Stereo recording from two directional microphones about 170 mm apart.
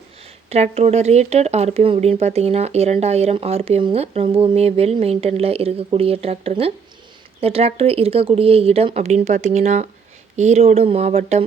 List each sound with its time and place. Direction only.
0.5 s speech: 35° right (ahead or behind)